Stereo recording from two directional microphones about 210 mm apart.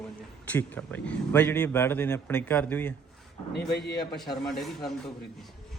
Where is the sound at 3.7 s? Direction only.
50° left (ahead or behind).